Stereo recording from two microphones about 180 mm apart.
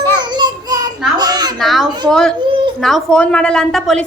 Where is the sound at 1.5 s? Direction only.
Centre (ahead or behind).